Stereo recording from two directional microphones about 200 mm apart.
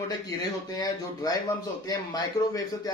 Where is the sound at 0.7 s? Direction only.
20° left (ahead or behind).